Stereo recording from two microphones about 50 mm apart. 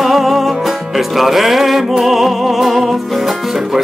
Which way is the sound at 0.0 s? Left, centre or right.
Centre.